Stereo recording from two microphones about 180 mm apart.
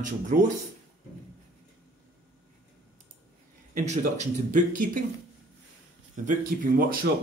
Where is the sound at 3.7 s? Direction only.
40° right (ahead or behind).